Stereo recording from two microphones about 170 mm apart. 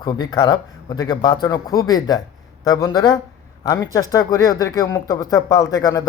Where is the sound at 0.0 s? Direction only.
25° left (ahead or behind).